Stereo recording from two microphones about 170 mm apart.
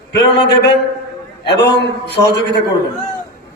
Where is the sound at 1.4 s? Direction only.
75° left (ahead or behind).